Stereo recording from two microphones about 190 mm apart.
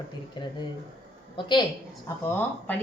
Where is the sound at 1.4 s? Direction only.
25° left (ahead or behind).